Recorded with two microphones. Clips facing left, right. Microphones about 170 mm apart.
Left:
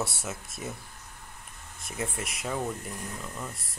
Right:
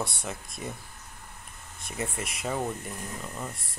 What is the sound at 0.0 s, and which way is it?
Speech, 5° left (ahead or behind).